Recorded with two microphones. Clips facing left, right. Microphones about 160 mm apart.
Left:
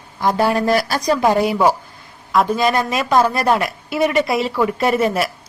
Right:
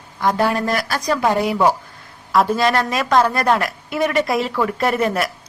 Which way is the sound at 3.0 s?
10° left (ahead or behind).